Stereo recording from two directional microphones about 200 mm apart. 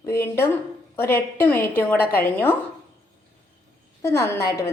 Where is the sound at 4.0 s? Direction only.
15° left (ahead or behind).